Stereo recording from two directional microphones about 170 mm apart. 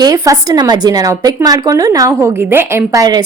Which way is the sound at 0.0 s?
20° right (ahead or behind).